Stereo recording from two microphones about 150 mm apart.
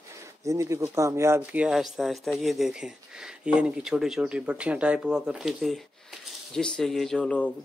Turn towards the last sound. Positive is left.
turn(degrees=5)  # may be behind; listen again after turning